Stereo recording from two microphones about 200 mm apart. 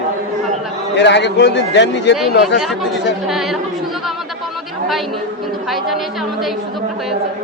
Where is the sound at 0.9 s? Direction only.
60° left (ahead or behind).